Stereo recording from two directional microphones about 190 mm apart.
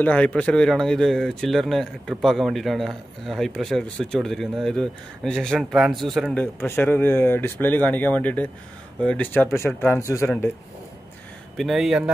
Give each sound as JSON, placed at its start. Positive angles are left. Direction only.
{"t": 0.0, "sound": "speech", "side_deg": 5}
{"t": 11.5, "sound": "speech", "side_deg": 0}